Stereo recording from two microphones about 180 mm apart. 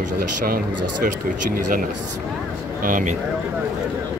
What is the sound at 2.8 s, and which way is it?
Speech, 50° right (ahead or behind).